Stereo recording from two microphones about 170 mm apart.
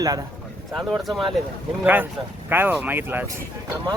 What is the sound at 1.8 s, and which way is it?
Speech, 10° right (ahead or behind).